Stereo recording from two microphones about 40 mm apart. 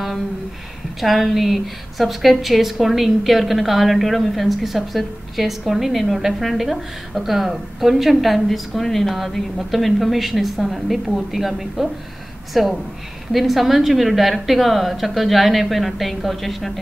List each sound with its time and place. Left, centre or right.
1.0 s a woman's voice: centre